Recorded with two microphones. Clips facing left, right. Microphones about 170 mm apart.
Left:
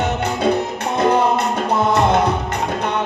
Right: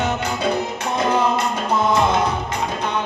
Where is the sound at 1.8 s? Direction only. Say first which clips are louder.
Left 2 dB; 60° left (ahead or behind).